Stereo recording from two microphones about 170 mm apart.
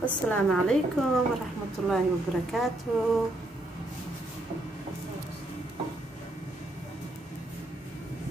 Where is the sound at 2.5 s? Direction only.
Centre (ahead or behind).